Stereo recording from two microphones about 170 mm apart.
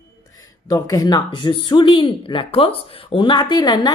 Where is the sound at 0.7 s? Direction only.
20° left (ahead or behind).